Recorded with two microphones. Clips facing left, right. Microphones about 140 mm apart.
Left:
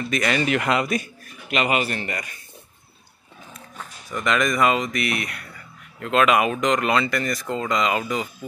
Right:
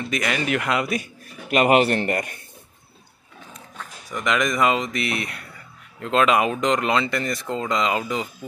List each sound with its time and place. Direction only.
0.1 s speech: 10° right (ahead or behind)
1.7 s speech: 60° right (ahead or behind)
4.1 s speech: 15° right (ahead or behind)